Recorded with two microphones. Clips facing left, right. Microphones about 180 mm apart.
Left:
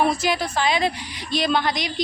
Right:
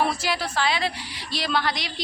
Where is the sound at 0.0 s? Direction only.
15° left (ahead or behind).